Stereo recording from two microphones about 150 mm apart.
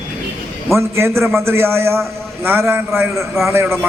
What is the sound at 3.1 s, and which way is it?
Speech, centre (ahead or behind).